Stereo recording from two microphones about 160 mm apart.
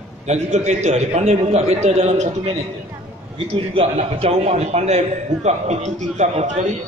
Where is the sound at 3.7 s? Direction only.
40° right (ahead or behind).